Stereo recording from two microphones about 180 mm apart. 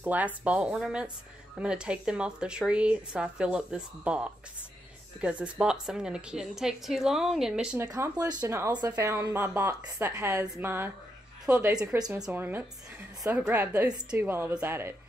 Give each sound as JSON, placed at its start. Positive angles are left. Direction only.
{"t": 0.0, "sound": "a woman's voice", "side_deg": -10}
{"t": 7.9, "sound": "a woman's voice", "side_deg": -20}